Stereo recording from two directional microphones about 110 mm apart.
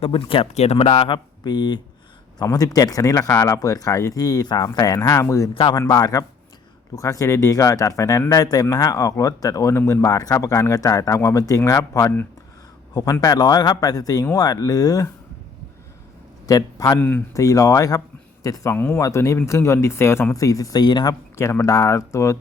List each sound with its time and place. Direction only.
0.0 s speech: 55° left (ahead or behind)
0.5 s a man's voice: 70° left (ahead or behind); by 15.1 s 30° left (ahead or behind)
16.5 s speech: 30° left (ahead or behind)
17.0 s speech: 15° left (ahead or behind)
17.3 s speech: 30° left (ahead or behind)
21.3 s speech: 25° left (ahead or behind)